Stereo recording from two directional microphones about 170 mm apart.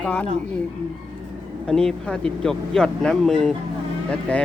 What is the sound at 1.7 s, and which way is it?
Speech, 5° left (ahead or behind).